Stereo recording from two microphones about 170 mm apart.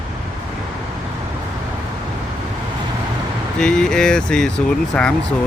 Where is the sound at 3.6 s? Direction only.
5° left (ahead or behind).